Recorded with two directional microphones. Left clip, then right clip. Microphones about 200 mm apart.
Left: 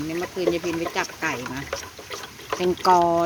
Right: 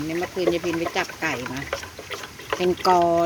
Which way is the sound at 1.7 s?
35° left (ahead or behind).